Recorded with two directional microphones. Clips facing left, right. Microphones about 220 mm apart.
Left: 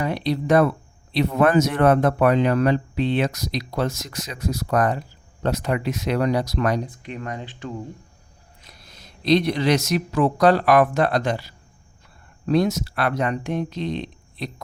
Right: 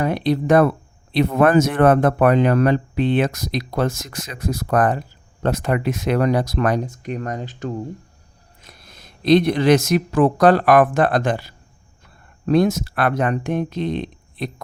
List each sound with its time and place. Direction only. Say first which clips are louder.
0.0 s speech: right 4 dB; 50° right (ahead or behind)